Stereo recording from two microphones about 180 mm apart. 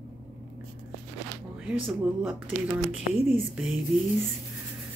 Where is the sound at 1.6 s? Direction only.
10° right (ahead or behind).